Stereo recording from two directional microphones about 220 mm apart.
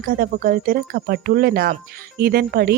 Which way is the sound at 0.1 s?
40° right (ahead or behind).